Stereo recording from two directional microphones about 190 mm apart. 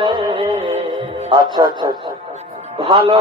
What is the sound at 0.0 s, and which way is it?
Music, 25° right (ahead or behind).